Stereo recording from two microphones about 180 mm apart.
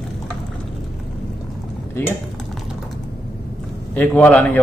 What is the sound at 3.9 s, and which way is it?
Speech, 10° left (ahead or behind).